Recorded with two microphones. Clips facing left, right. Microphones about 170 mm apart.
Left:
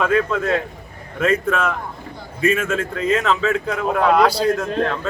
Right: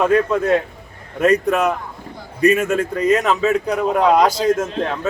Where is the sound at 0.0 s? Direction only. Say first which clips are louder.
Right 3 dB; 40° right (ahead or behind).